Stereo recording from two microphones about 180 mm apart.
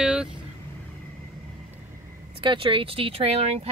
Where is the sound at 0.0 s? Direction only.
5° right (ahead or behind).